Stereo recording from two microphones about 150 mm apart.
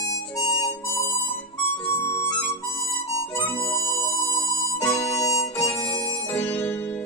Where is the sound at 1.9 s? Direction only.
15° left (ahead or behind).